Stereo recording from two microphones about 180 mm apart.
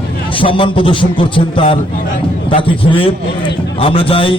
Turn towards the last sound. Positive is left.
turn(degrees=30)  # may be behind; listen again after turning